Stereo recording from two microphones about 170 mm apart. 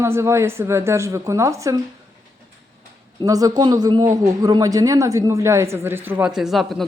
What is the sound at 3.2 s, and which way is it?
Speech, 20° right (ahead or behind).